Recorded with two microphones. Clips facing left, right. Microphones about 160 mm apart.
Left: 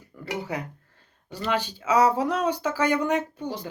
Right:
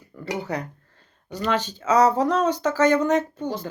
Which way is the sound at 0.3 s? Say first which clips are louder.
Right 3 dB; 10° left (ahead or behind).